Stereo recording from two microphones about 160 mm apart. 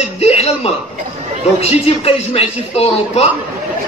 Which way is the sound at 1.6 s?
40° left (ahead or behind).